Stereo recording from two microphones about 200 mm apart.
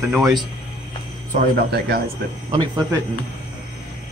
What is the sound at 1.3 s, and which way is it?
Speech, 50° right (ahead or behind).